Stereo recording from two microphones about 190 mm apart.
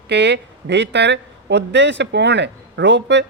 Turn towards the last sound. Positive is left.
turn(degrees=-65)  # may be behind; listen again after turning